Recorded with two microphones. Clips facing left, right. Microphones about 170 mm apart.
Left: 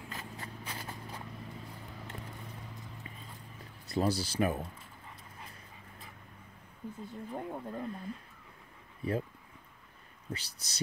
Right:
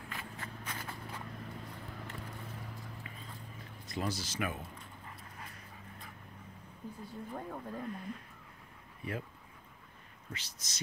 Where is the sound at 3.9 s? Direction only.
35° left (ahead or behind).